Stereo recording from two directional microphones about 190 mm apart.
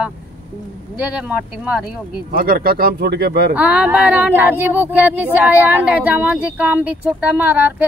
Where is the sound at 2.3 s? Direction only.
50° right (ahead or behind).